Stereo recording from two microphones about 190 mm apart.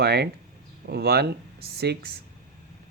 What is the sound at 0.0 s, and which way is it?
Speech, 55° right (ahead or behind).